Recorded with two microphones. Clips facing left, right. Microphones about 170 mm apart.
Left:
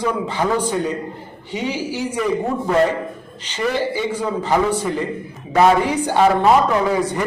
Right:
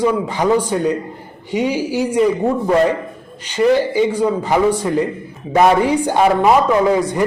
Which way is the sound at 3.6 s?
15° right (ahead or behind).